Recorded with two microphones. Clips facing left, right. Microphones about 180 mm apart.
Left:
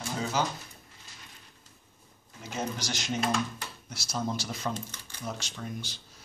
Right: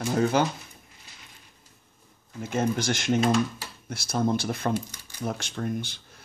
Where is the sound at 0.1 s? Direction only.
60° right (ahead or behind).